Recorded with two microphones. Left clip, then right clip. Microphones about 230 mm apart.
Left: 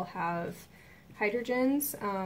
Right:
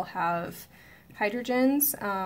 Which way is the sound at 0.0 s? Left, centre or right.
Right.